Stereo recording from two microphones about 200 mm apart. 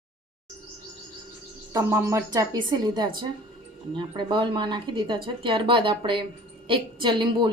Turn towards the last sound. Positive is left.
turn(degrees=-20)  # may be behind; listen again after turning